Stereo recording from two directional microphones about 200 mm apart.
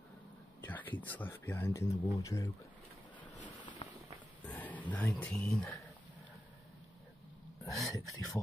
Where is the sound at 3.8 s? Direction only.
30° left (ahead or behind).